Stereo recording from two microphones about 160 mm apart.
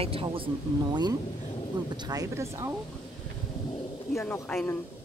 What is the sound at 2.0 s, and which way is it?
Speech, 20° right (ahead or behind).